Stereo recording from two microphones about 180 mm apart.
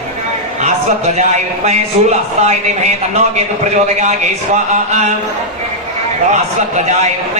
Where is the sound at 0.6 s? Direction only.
40° right (ahead or behind).